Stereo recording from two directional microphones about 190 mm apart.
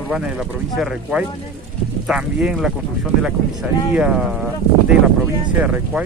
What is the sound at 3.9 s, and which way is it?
Speech, 5° right (ahead or behind).